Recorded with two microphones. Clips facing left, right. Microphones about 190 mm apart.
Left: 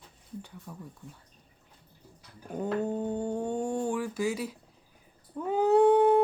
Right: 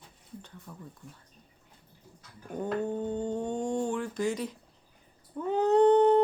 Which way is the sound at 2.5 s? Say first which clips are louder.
Left 1 dB; 10° left (ahead or behind).